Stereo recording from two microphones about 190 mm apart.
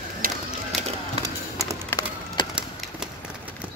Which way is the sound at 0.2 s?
50° right (ahead or behind).